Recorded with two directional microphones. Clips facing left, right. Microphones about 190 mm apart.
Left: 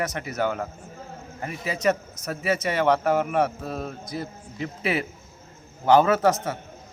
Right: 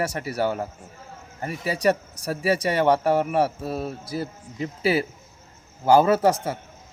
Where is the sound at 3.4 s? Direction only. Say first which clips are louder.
Right 2 dB; 5° right (ahead or behind).